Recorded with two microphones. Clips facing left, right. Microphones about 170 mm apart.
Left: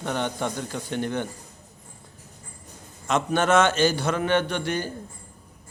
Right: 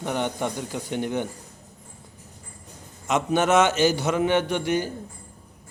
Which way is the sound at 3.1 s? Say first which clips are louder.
Right 1 dB; 20° right (ahead or behind).